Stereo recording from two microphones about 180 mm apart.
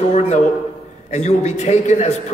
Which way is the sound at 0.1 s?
40° left (ahead or behind).